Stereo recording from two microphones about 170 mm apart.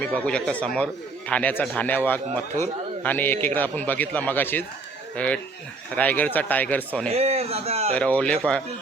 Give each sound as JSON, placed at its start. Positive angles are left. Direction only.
{"t": 0.0, "sound": "a man's voice", "side_deg": 5}
{"t": 7.1, "sound": "a man's voice", "side_deg": -40}
{"t": 7.9, "sound": "a man's voice", "side_deg": 5}